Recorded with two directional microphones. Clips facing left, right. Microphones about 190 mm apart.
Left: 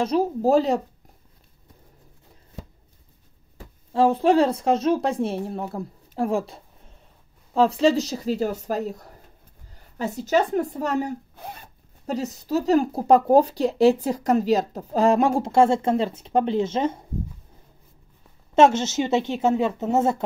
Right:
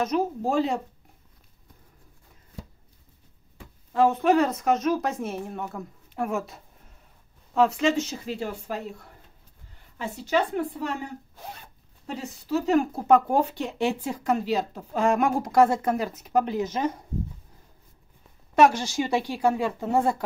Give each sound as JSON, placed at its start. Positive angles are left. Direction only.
{"t": 0.0, "sound": "speech", "side_deg": 35}
{"t": 3.5, "sound": "speech", "side_deg": 30}
{"t": 18.5, "sound": "a woman's voice", "side_deg": 25}